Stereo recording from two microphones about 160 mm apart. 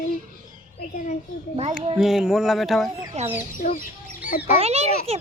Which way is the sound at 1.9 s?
5° right (ahead or behind).